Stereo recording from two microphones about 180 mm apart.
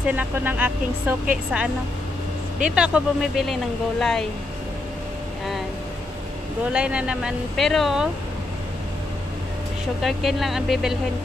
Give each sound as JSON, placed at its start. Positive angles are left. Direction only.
{"t": 0.0, "sound": "speech", "side_deg": -10}
{"t": 6.7, "sound": "speech", "side_deg": -5}
{"t": 10.0, "sound": "speech", "side_deg": 0}